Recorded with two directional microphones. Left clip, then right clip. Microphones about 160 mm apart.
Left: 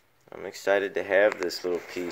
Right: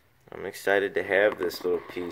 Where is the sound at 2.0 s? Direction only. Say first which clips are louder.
Left 1 dB; 15° left (ahead or behind).